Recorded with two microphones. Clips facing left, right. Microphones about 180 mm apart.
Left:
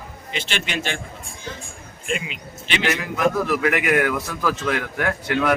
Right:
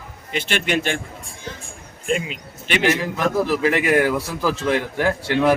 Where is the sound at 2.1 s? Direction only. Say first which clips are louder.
Right 4 dB; 40° right (ahead or behind).